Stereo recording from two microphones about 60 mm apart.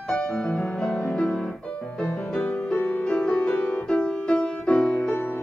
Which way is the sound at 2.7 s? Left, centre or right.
Left.